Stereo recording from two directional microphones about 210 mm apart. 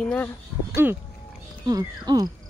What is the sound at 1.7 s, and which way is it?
Speech, 15° right (ahead or behind).